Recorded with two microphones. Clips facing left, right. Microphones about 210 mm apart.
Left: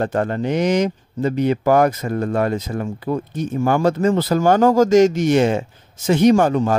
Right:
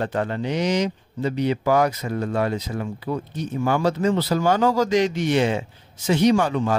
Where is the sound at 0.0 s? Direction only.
45° left (ahead or behind).